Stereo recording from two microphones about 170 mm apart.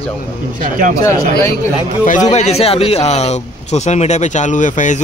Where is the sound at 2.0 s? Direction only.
45° left (ahead or behind).